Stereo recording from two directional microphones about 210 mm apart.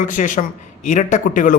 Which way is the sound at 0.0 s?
40° left (ahead or behind).